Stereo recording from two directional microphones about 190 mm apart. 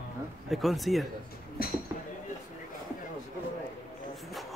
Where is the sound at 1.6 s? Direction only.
50° left (ahead or behind).